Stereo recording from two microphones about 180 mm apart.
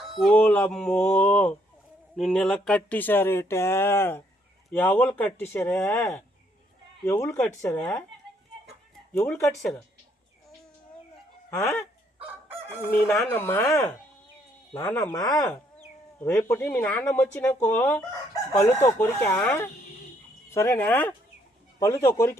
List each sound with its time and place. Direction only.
0.1 s a sound: centre (ahead or behind)
0.3 s speech: 10° left (ahead or behind)
9.1 s speech: 10° left (ahead or behind)
11.5 s speech: 20° left (ahead or behind)
12.2 s chicken: 10° right (ahead or behind)
13.3 s speech: 15° left (ahead or behind)